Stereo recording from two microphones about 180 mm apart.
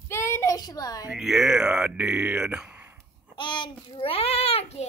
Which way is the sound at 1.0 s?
Centre (ahead or behind).